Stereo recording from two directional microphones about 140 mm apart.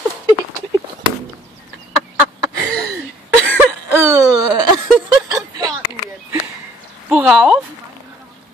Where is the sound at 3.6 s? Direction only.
15° right (ahead or behind).